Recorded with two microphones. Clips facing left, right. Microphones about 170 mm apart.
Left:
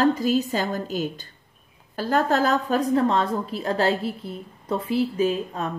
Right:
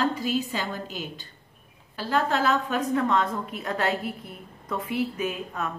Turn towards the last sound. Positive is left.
turn(degrees=30)  # may be behind; listen again after turning